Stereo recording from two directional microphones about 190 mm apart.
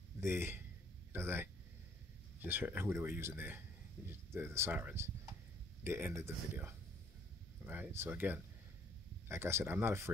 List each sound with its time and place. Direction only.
0.2 s speech: 10° right (ahead or behind)